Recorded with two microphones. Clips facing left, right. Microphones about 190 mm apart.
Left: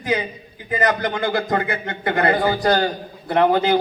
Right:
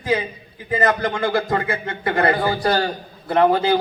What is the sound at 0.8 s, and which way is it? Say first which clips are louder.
Speech: even; 20° left (ahead or behind).